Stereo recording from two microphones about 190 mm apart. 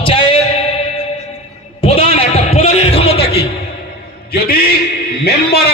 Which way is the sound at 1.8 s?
30° left (ahead or behind).